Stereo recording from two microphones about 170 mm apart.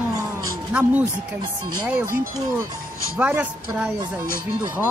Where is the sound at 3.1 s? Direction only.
10° right (ahead or behind).